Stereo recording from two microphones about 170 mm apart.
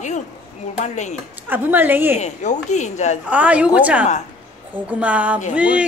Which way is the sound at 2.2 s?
45° left (ahead or behind).